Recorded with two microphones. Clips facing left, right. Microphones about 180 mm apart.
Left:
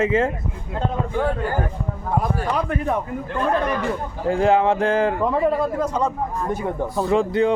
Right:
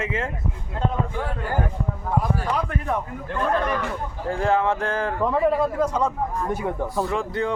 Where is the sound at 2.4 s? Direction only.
20° left (ahead or behind).